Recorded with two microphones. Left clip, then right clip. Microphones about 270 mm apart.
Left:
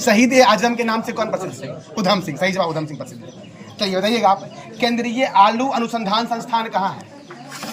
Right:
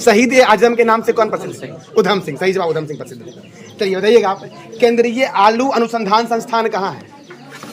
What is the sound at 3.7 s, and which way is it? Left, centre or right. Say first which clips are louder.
Speech: right 8 dB; centre.